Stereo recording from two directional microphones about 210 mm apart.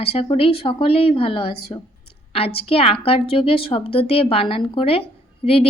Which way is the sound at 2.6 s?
25° left (ahead or behind).